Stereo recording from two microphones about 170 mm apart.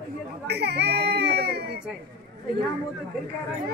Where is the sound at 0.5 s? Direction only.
80° right.